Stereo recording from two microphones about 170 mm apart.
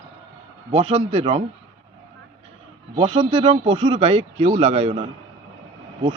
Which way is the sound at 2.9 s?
35° right (ahead or behind).